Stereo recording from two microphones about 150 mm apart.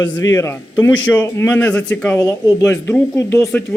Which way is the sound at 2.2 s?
20° left (ahead or behind).